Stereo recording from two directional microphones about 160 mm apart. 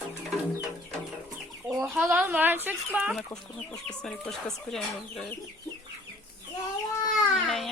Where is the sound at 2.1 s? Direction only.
10° right (ahead or behind).